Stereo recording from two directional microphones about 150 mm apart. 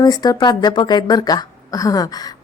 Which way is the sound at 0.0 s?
25° left (ahead or behind).